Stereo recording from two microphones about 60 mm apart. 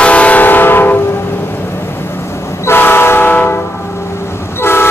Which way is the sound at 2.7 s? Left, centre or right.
Left.